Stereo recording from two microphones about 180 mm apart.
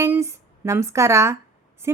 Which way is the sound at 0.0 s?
15° right (ahead or behind).